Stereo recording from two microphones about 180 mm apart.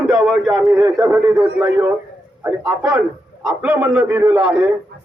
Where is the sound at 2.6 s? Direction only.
10° right (ahead or behind).